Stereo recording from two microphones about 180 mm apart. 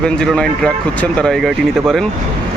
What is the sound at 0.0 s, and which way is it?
Speech, 5° left (ahead or behind).